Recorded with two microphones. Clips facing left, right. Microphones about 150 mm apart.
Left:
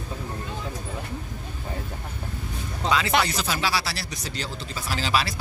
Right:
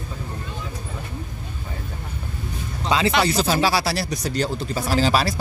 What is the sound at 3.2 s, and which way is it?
Speech, 30° right (ahead or behind).